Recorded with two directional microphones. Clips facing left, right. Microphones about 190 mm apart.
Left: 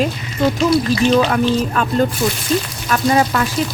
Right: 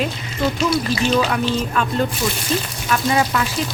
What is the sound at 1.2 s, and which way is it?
Speech, 50° left (ahead or behind).